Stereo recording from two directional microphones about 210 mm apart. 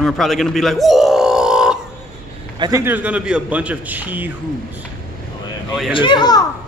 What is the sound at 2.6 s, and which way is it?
A man's voice, 15° right (ahead or behind).